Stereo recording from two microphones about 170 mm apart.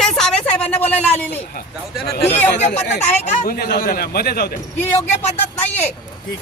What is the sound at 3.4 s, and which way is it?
A man's voice, 60° left (ahead or behind).